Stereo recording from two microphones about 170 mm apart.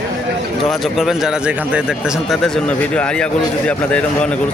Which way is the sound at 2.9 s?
5° left (ahead or behind).